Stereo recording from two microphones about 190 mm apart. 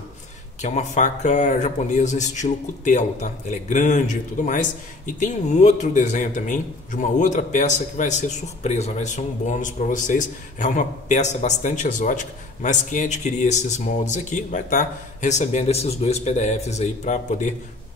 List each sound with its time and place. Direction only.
0.6 s a man's voice: 40° left (ahead or behind)